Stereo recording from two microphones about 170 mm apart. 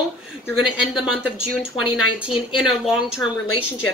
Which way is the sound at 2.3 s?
30° left (ahead or behind).